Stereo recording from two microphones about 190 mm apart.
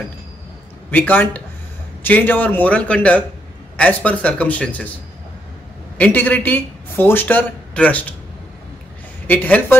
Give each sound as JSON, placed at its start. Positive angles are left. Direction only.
{"t": 0.8, "sound": "speech", "side_deg": 10}
{"t": 5.9, "sound": "speech", "side_deg": 10}
{"t": 9.3, "sound": "speech", "side_deg": 10}